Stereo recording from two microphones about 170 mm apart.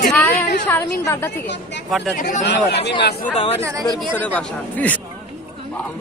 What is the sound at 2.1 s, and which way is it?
Speech, 55° left (ahead or behind).